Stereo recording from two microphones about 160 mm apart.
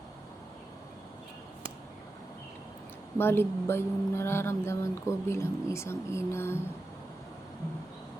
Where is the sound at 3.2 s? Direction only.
15° left (ahead or behind).